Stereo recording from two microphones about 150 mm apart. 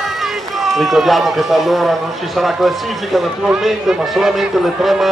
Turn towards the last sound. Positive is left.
turn(degrees=-5)  # may be behind; listen again after turning